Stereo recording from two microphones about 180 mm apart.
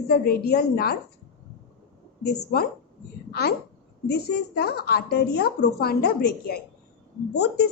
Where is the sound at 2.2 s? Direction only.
60° left (ahead or behind).